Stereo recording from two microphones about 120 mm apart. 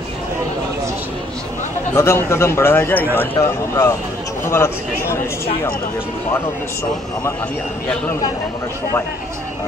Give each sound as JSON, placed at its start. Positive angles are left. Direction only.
{"t": 2.0, "sound": "speech", "side_deg": 20}